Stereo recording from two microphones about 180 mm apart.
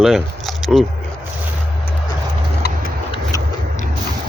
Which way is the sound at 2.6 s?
65° left (ahead or behind).